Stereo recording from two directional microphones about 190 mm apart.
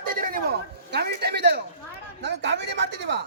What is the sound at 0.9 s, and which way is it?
Speech, 60° right (ahead or behind).